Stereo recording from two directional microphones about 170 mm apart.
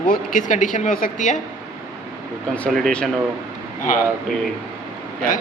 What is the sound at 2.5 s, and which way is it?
Speech, 5° left (ahead or behind).